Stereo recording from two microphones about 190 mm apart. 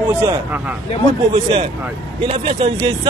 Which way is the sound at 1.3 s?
25° right (ahead or behind).